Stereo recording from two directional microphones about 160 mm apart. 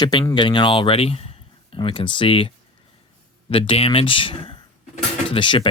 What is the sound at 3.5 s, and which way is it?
Speech, 35° left (ahead or behind).